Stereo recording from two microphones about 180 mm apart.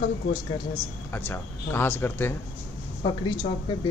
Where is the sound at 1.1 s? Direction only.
10° left (ahead or behind).